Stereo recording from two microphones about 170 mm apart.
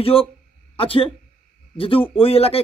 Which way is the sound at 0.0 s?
35° left (ahead or behind).